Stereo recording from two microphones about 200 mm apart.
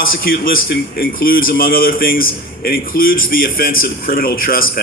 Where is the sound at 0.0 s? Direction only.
45° left (ahead or behind).